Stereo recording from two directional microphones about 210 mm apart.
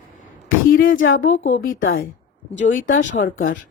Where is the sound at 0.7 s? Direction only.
45° left (ahead or behind).